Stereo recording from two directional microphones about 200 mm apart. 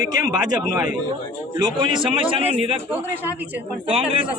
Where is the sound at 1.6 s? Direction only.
25° right (ahead or behind).